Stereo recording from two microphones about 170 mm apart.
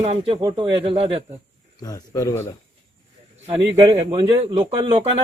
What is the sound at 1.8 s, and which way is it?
Speech, 20° left (ahead or behind).